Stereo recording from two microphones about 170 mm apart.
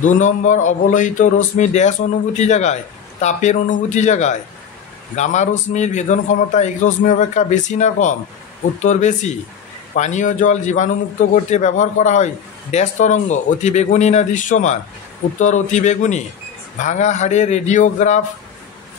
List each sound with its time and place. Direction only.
0.0 s speech: 45° left (ahead or behind)